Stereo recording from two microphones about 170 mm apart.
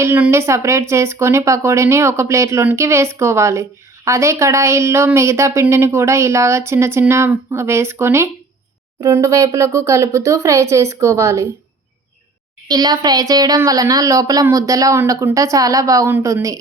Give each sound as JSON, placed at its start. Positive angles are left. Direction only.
{"t": 0.0, "sound": "speech", "side_deg": -15}
{"t": 12.6, "sound": "speech", "side_deg": -25}